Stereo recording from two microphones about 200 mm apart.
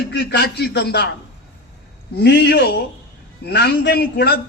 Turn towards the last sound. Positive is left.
turn(degrees=55)  # may be behind; listen again after turning